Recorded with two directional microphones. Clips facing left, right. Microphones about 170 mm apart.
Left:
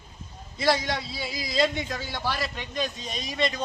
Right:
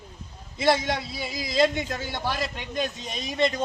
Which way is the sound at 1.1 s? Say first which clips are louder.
Right 2 dB; 50° right (ahead or behind).